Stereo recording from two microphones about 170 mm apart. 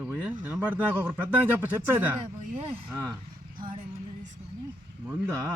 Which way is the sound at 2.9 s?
20° right (ahead or behind).